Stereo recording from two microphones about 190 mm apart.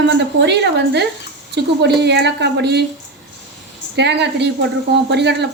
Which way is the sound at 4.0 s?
65° right (ahead or behind).